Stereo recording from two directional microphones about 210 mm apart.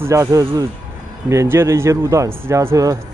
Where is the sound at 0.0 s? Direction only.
15° right (ahead or behind).